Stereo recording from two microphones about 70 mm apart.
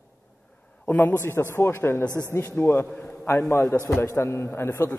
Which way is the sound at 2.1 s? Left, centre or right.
Right.